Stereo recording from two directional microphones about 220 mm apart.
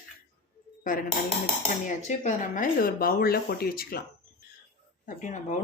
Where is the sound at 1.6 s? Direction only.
35° left (ahead or behind).